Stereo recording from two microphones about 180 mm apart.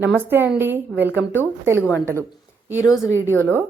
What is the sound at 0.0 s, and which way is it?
A woman's voice, 10° right (ahead or behind).